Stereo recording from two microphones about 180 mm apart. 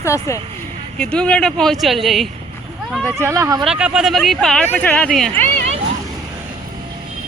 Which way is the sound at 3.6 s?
5° right (ahead or behind).